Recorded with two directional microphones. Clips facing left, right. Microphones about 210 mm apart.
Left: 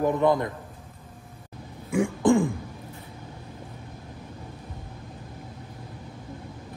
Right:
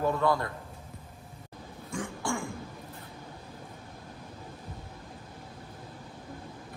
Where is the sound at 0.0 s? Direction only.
20° left (ahead or behind).